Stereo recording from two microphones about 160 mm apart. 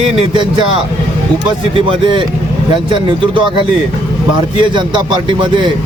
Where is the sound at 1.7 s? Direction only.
30° right (ahead or behind).